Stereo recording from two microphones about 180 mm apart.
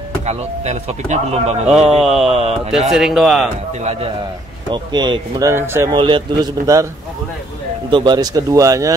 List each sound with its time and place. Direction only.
0.3 s speech: 40° right (ahead or behind)
1.7 s speech: centre (ahead or behind)
4.6 s speech: 25° right (ahead or behind)
5.5 s speech: 15° right (ahead or behind)
5.9 s speech: 25° right (ahead or behind)
7.9 s speech: 25° right (ahead or behind)